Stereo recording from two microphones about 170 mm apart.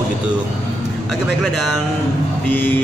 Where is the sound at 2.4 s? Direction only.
10° left (ahead or behind).